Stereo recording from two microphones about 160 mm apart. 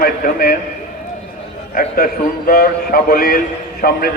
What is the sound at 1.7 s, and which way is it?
A man's voice, 65° left (ahead or behind).